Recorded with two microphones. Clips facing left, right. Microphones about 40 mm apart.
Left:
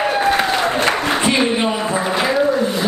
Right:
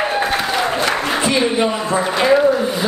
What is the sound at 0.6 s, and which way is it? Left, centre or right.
Applause, left.